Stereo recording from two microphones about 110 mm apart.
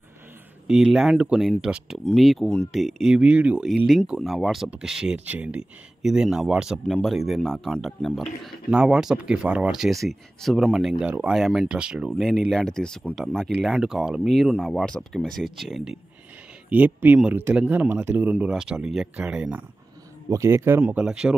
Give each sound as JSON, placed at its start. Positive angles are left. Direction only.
{"t": 0.7, "sound": "speech", "side_deg": -5}
{"t": 3.2, "sound": "speech", "side_deg": -10}
{"t": 3.6, "sound": "speech", "side_deg": 0}
{"t": 11.1, "sound": "speech", "side_deg": -15}
{"t": 11.3, "sound": "speech", "side_deg": 0}
{"t": 16.6, "sound": "speech", "side_deg": -15}
{"t": 18.4, "sound": "speech", "side_deg": -5}
{"t": 20.2, "sound": "speech", "side_deg": -25}
{"t": 20.8, "sound": "speech", "side_deg": -10}